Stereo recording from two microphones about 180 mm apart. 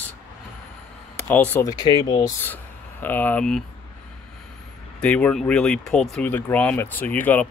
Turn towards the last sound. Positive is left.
turn(degrees=10)  # may be behind; listen again after turning